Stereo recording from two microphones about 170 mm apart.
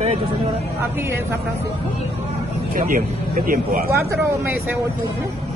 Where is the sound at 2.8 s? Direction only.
55° right (ahead or behind).